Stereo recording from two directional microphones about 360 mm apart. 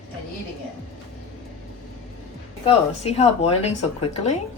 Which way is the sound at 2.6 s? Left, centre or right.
Centre.